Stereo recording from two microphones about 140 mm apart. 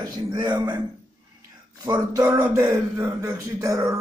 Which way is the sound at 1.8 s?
30° right (ahead or behind).